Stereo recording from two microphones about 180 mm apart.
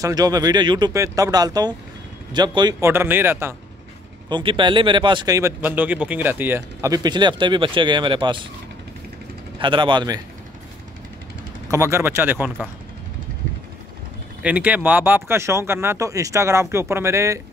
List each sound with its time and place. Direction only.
0.0 s speech: 20° right (ahead or behind)
4.3 s speech: 25° right (ahead or behind)
9.6 s speech: 25° right (ahead or behind)
11.7 s speech: 15° right (ahead or behind)
14.4 s speech: 10° right (ahead or behind)